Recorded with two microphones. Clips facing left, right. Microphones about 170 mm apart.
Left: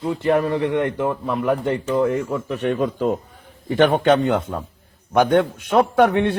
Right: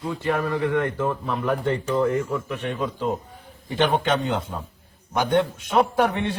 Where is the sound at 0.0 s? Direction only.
30° left (ahead or behind).